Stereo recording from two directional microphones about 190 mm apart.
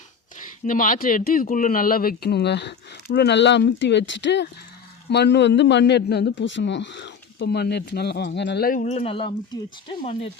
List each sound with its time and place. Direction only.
0.3 s a man's voice: 45° left (ahead or behind)